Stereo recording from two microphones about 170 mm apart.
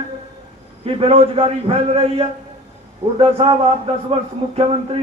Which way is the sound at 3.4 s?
35° right (ahead or behind).